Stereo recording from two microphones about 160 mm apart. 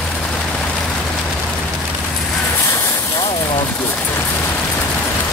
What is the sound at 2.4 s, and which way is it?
Vehicle, 15° left (ahead or behind).